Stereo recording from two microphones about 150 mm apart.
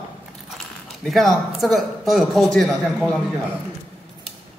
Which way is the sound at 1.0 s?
Centre (ahead or behind).